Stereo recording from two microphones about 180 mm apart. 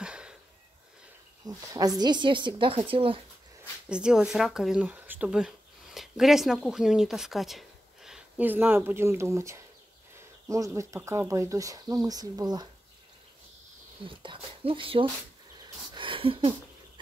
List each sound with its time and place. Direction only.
0.0 s sniff: 5° right (ahead or behind)
1.5 s speech: 20° right (ahead or behind)
3.9 s speech: 5° right (ahead or behind); by 12.6 s 20° right (ahead or behind)
14.0 s speech: 30° right (ahead or behind)
15.9 s a sound: 30° right (ahead or behind)